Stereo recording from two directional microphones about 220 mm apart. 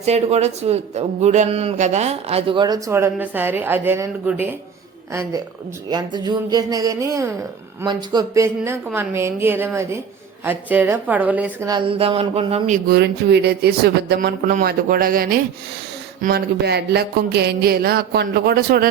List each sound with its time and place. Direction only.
0.0 s a man's voice: 30° right (ahead or behind); by 4.5 s 10° right (ahead or behind)
5.9 s speech: 20° right (ahead or behind)
11.7 s a man's voice: 25° right (ahead or behind)
13.0 s a sound: 50° right (ahead or behind)